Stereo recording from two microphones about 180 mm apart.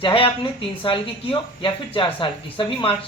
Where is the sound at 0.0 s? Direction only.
30° left (ahead or behind).